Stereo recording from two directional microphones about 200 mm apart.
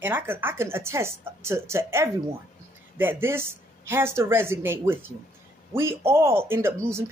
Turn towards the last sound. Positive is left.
turn(degrees=-15)  # may be behind; listen again after turning